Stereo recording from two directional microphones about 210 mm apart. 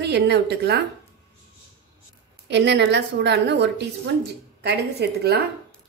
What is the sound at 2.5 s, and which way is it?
A woman's voice, 55° right (ahead or behind).